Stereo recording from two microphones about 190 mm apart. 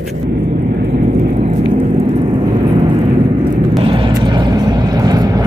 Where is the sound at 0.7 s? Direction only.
55° right (ahead or behind).